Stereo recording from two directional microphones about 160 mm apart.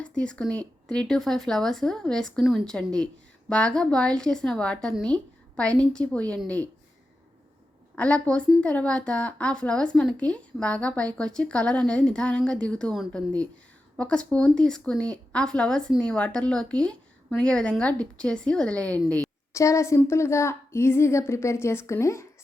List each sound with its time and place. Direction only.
0.2 s a woman's voice: 5° left (ahead or behind)
7.9 s a woman's voice: 10° left (ahead or behind)
19.5 s a woman's voice: 20° left (ahead or behind)